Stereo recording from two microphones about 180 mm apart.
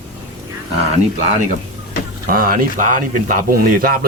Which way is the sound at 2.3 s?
50° right (ahead or behind).